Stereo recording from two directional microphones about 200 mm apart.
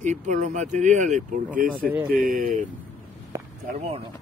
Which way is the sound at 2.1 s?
45° right (ahead or behind).